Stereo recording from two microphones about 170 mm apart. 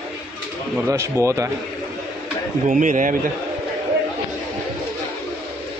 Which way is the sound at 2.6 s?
50° right (ahead or behind).